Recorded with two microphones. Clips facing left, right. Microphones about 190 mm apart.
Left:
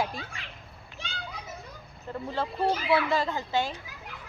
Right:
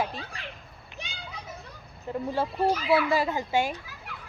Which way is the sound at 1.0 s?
15° right (ahead or behind).